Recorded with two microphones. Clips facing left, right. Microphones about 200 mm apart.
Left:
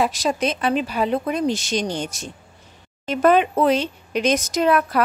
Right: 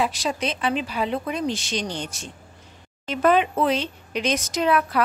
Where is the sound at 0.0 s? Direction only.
45° left (ahead or behind).